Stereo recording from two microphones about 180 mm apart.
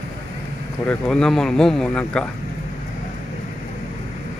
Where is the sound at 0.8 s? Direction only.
5° left (ahead or behind).